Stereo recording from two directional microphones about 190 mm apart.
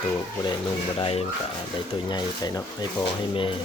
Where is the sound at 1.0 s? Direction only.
30° left (ahead or behind).